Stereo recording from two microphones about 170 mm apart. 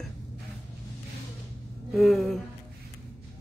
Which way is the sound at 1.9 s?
Centre (ahead or behind).